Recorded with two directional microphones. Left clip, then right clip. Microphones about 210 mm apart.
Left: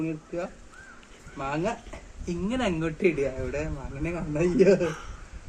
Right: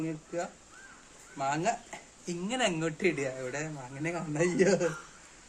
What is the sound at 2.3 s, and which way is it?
Speech, 20° right (ahead or behind).